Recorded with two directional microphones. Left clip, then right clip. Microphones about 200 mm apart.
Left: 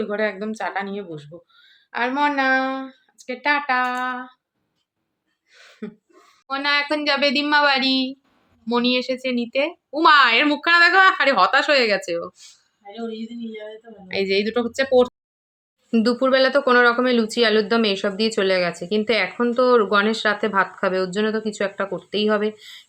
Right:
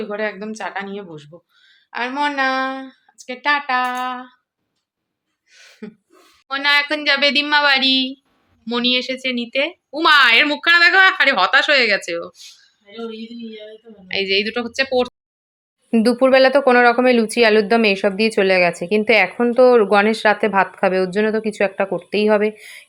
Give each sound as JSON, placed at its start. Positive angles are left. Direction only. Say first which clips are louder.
{"t": 0.0, "sound": "speech", "louder": "even", "side_deg": 10}
{"t": 5.5, "sound": "a sound", "louder": "even", "side_deg": 5}
{"t": 6.5, "sound": "speech", "louder": "right 4 dB", "side_deg": 0}
{"t": 14.1, "sound": "speech", "louder": "right 2 dB", "side_deg": 5}
{"t": 15.9, "sound": "speech", "louder": "right 4 dB", "side_deg": -20}